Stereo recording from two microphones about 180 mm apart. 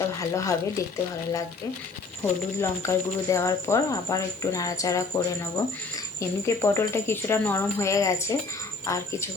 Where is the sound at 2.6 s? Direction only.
15° left (ahead or behind).